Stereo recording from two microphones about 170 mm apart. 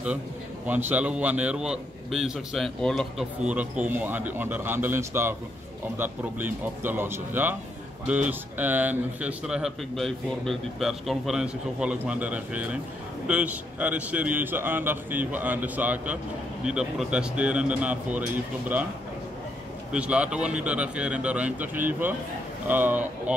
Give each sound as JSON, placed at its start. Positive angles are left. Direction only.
{"t": 0.7, "sound": "a man's voice", "side_deg": -10}
{"t": 19.9, "sound": "a man's voice", "side_deg": -5}